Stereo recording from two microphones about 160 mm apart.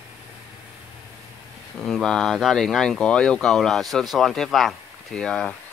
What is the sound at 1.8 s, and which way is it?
Speech, 5° left (ahead or behind).